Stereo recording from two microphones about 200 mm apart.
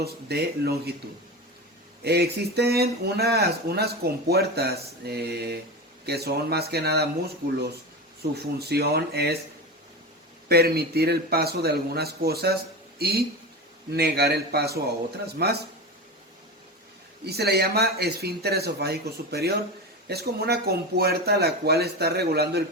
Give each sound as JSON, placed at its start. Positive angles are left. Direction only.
{"t": 0.0, "sound": "speech", "side_deg": -55}
{"t": 2.0, "sound": "speech", "side_deg": -55}
{"t": 10.5, "sound": "speech", "side_deg": -50}
{"t": 17.2, "sound": "speech", "side_deg": -50}